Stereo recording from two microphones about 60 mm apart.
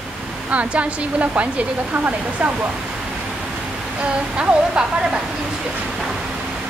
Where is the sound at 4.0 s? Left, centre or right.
Centre.